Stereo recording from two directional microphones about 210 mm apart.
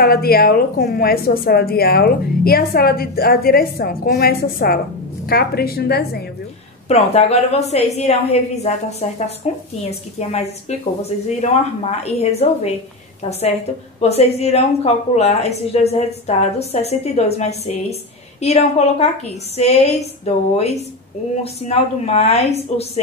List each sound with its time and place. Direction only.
0.0 s a woman's voice: 45° left (ahead or behind)
6.9 s a woman's voice: 30° left (ahead or behind)
20.2 s a woman's voice: 30° left (ahead or behind)